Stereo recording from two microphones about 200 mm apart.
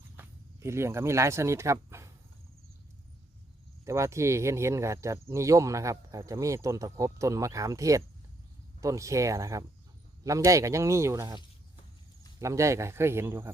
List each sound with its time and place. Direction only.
0.2 s speech: 15° right (ahead or behind)
3.8 s speech: 15° right (ahead or behind)
12.4 s speech: 15° right (ahead or behind)